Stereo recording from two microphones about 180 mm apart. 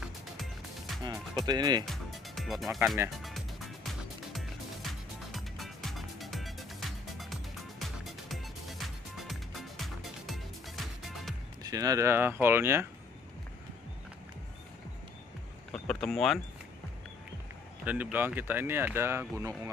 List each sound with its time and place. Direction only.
0.0 s music: centre (ahead or behind)
1.0 s speech: 25° right (ahead or behind)
1.9 s music: centre (ahead or behind)
7.8 s music: centre (ahead or behind)
11.6 s speech: 20° right (ahead or behind)
15.7 s vehicle: 5° left (ahead or behind)
17.8 s speech: 10° right (ahead or behind)